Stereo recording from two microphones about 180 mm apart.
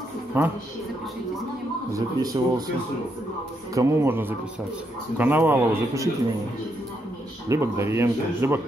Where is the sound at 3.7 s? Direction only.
15° right (ahead or behind).